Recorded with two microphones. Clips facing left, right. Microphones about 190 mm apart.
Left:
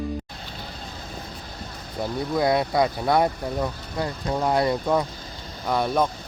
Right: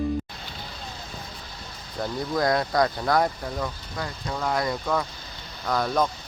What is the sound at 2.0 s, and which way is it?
Speech, 5° left (ahead or behind).